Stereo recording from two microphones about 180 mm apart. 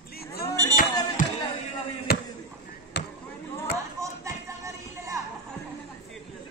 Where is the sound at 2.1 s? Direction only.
60° left (ahead or behind).